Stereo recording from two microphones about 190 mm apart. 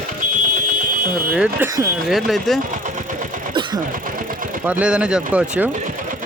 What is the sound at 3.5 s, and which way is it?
Vehicle, 25° right (ahead or behind).